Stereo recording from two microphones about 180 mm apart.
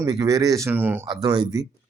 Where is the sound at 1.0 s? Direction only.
20° right (ahead or behind).